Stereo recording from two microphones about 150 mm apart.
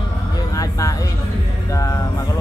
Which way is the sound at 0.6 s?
20° left (ahead or behind).